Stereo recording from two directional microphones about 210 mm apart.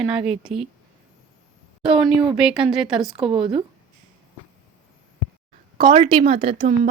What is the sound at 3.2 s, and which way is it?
Speech, 25° right (ahead or behind).